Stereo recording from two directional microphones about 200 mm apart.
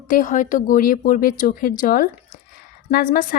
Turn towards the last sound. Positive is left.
turn(degrees=45)  # may be behind; listen again after turning